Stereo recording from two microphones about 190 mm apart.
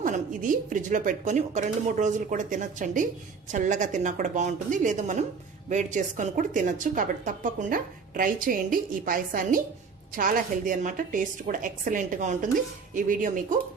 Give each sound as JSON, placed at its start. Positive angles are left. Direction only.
{"t": 0.0, "sound": "a woman's voice", "side_deg": -45}